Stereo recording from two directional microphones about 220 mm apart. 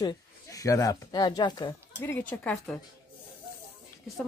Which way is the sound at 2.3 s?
5° left (ahead or behind).